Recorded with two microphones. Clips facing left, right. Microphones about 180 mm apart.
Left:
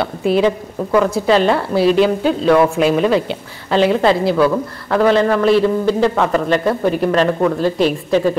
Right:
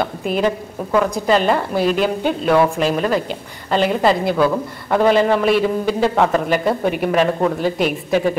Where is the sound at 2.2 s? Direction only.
5° right (ahead or behind).